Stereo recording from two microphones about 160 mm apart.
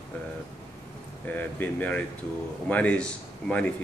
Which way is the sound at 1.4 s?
10° left (ahead or behind).